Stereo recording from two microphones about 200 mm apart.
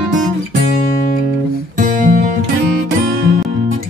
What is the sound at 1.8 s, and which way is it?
Music, 40° right (ahead or behind).